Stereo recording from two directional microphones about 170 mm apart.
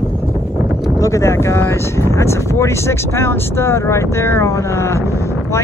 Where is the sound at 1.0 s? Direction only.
15° left (ahead or behind).